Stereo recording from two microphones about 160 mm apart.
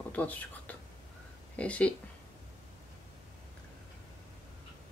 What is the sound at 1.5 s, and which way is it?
Speech, 10° left (ahead or behind).